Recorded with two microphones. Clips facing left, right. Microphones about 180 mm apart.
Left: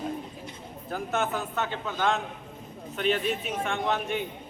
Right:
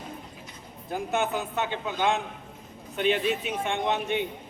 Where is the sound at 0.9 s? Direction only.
10° right (ahead or behind).